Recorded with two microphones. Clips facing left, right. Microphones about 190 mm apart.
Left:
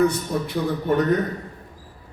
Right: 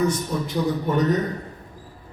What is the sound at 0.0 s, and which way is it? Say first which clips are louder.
A man's voice: left 2 dB; 60° left (ahead or behind).